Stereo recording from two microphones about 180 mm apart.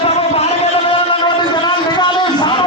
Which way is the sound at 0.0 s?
35° left (ahead or behind).